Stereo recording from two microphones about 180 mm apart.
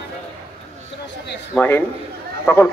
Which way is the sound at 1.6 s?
10° left (ahead or behind).